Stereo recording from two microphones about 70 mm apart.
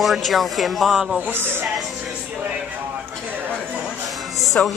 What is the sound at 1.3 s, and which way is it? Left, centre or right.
Speech, right.